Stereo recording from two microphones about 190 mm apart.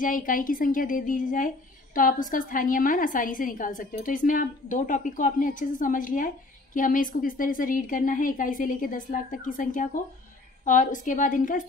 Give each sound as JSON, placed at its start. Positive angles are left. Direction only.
{"t": 0.0, "sound": "a woman's voice", "side_deg": 45}